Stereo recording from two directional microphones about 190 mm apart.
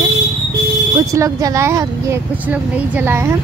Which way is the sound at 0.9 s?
15° right (ahead or behind).